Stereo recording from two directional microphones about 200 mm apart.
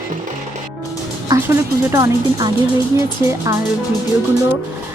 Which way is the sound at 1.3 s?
15° right (ahead or behind).